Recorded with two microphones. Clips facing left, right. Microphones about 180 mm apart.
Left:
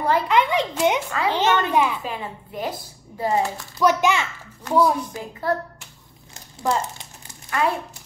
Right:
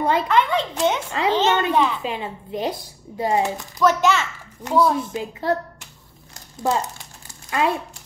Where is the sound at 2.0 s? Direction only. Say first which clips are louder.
Right 3 dB; 20° right (ahead or behind).